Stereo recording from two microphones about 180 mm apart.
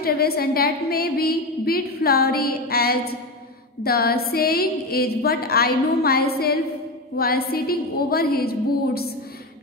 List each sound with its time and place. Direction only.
0.0 s a woman's voice: 60° left (ahead or behind)